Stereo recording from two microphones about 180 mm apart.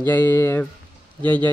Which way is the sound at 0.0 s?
15° left (ahead or behind).